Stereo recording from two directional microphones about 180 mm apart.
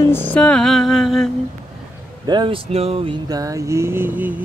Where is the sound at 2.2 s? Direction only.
25° right (ahead or behind).